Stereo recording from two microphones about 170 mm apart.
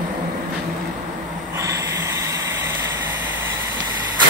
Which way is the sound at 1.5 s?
20° right (ahead or behind).